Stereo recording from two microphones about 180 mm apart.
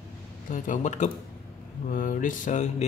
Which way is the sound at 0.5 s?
45° left (ahead or behind).